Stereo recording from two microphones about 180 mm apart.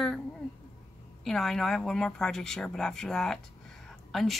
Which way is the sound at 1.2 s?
Centre (ahead or behind).